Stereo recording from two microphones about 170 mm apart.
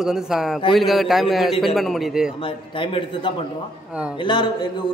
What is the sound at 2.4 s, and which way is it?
A man's voice, 30° left (ahead or behind).